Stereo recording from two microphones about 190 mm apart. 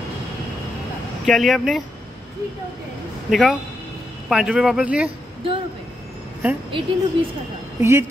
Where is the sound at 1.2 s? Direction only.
Centre (ahead or behind).